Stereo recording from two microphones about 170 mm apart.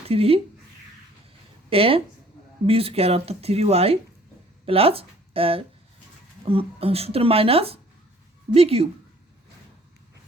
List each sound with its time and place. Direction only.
0.1 s speech: 35° right (ahead or behind)
1.7 s speech: 35° right (ahead or behind)